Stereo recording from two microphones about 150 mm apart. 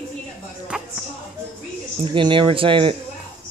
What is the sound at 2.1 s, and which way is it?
Speech, 35° right (ahead or behind).